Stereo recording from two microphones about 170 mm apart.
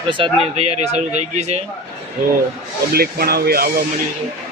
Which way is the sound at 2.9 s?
65° right (ahead or behind).